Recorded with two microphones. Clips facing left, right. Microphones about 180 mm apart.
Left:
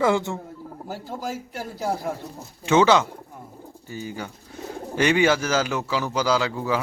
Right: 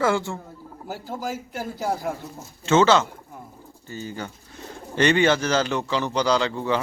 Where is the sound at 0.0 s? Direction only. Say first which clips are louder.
Left 1 dB; 20° left (ahead or behind).